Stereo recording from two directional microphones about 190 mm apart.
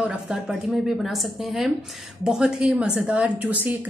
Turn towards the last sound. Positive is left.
turn(degrees=-5)  # may be behind; listen again after turning